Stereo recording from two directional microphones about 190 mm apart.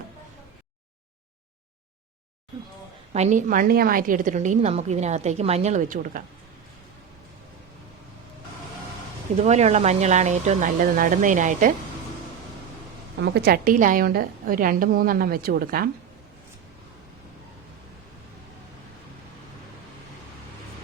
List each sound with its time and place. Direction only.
3.1 s a woman's voice: 40° right (ahead or behind)
9.4 s a woman's voice: 35° right (ahead or behind)
13.2 s a woman's voice: 60° right (ahead or behind)